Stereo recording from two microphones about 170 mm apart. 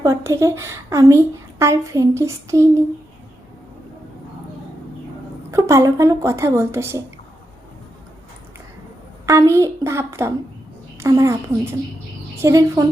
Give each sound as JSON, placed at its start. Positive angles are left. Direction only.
{"t": 0.0, "sound": "a woman's voice", "side_deg": -15}
{"t": 5.5, "sound": "a woman's voice", "side_deg": -15}
{"t": 9.2, "sound": "a woman's voice", "side_deg": -20}